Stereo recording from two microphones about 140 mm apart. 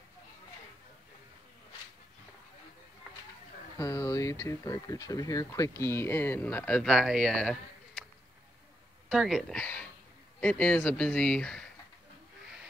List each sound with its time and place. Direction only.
3.7 s speech: 20° left (ahead or behind); by 8.0 s centre (ahead or behind)
9.1 s speech: centre (ahead or behind)